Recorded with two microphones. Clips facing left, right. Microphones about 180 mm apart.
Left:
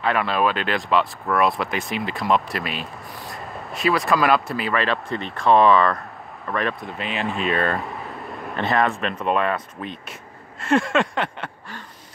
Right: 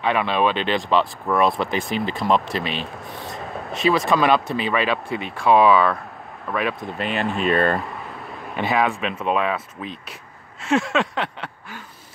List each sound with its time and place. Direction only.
0.0 s speech: 20° right (ahead or behind)
0.7 s speech: centre (ahead or behind)
2.5 s speech: 25° right (ahead or behind)
2.8 s speech: centre (ahead or behind)